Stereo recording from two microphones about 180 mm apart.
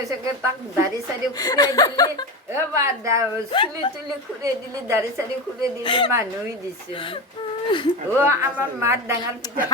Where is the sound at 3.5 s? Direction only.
30° left (ahead or behind).